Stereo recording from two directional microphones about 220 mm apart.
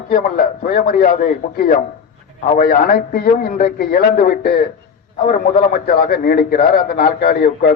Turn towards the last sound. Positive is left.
turn(degrees=40)  # may be behind; listen again after turning